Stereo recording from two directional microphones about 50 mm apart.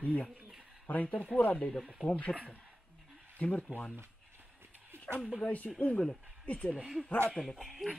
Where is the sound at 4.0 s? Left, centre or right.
Right.